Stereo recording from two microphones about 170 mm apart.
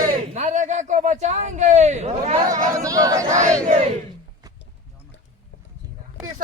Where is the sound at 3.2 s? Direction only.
45° right (ahead or behind).